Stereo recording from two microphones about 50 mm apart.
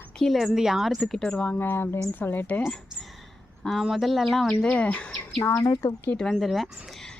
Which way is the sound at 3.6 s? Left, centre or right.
Centre.